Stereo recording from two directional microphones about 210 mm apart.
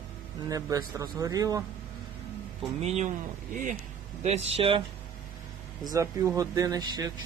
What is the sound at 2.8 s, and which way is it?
Speech, 30° right (ahead or behind).